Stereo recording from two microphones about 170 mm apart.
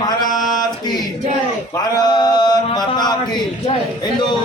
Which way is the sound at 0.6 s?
25° left (ahead or behind).